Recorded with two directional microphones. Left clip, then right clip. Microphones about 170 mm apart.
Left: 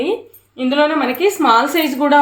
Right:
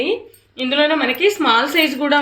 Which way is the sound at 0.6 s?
35° left (ahead or behind).